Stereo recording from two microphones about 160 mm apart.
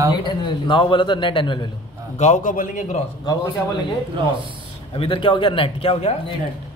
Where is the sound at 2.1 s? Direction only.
45° left (ahead or behind).